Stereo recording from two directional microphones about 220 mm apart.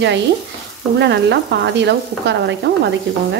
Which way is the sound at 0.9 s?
50° right (ahead or behind).